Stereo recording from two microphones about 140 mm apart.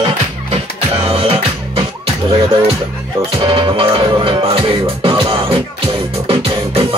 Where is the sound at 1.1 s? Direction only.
45° right (ahead or behind).